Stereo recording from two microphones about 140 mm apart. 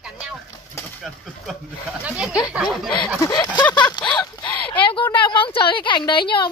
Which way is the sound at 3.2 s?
30° left (ahead or behind).